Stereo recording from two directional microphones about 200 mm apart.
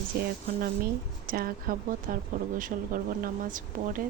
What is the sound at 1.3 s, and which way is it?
Speech, 45° right (ahead or behind).